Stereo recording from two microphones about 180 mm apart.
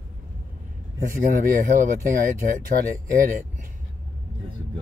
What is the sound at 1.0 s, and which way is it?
Speech, 50° right (ahead or behind).